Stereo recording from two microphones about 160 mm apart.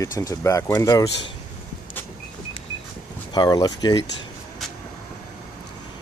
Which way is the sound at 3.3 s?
25° left (ahead or behind).